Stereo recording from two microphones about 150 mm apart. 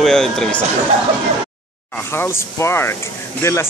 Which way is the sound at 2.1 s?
15° left (ahead or behind).